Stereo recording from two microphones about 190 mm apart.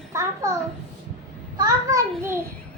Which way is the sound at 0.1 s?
15° right (ahead or behind).